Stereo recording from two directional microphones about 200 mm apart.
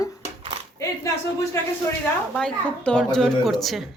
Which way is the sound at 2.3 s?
5° left (ahead or behind).